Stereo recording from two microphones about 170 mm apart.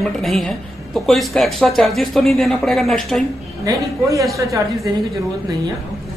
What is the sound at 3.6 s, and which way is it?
Speech, 20° right (ahead or behind).